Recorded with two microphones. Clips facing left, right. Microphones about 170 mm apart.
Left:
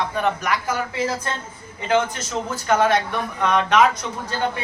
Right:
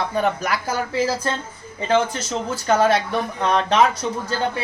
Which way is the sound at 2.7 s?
30° right (ahead or behind).